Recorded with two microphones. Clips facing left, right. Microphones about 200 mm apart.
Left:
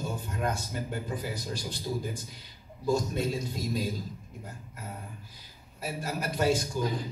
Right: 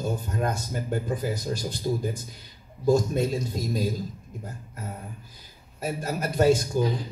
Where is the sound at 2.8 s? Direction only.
45° right (ahead or behind).